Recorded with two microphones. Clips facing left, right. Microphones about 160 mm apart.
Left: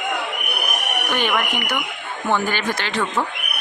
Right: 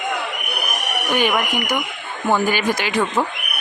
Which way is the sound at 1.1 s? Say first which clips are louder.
Right 3 dB; 10° right (ahead or behind).